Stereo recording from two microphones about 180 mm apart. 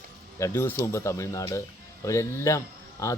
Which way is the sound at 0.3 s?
15° left (ahead or behind).